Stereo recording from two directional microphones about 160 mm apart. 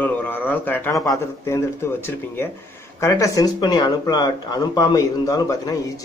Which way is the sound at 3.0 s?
20° left (ahead or behind).